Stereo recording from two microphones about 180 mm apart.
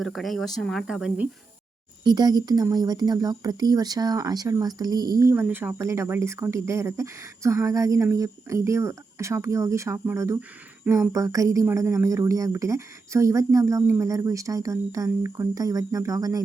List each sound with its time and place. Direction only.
0.0 s speech: centre (ahead or behind)
2.0 s speech: 25° right (ahead or behind)